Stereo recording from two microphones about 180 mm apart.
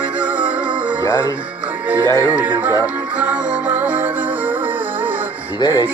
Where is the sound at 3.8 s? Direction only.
10° right (ahead or behind).